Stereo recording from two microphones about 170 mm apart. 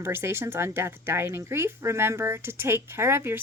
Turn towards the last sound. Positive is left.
turn(degrees=-15)  # may be behind; listen again after turning